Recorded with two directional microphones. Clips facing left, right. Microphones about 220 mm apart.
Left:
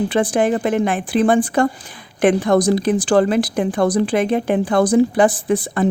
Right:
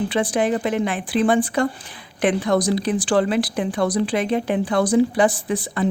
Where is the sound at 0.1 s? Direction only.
50° left (ahead or behind).